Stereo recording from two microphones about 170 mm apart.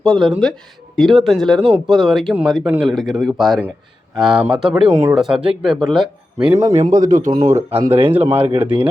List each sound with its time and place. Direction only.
0.0 s speech: centre (ahead or behind); by 5.1 s 15° right (ahead or behind)
5.1 s speech: centre (ahead or behind)
6.5 s a man's voice: 20° right (ahead or behind)
6.7 s speech: 50° right (ahead or behind)
7.3 s speech: 15° right (ahead or behind)
7.8 s speech: 35° right (ahead or behind)
8.1 s speech: 10° right (ahead or behind)